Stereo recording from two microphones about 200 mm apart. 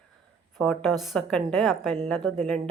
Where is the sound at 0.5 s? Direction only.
Centre (ahead or behind).